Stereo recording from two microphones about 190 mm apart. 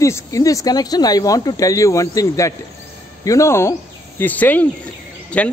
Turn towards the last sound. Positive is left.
turn(degrees=5)  # may be behind; listen again after turning